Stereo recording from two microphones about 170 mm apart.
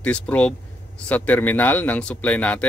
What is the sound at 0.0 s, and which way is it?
A man's voice, 10° left (ahead or behind).